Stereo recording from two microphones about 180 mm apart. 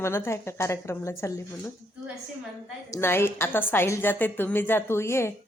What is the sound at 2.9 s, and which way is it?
Speech, 15° left (ahead or behind).